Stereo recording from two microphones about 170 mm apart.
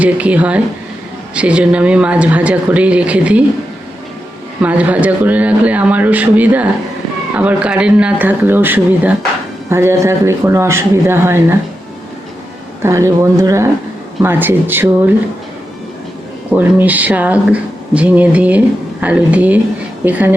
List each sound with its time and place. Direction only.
0.0 s speech: 10° right (ahead or behind)
4.6 s speech: 10° right (ahead or behind)
12.8 s speech: 15° right (ahead or behind)
16.5 s speech: 10° right (ahead or behind)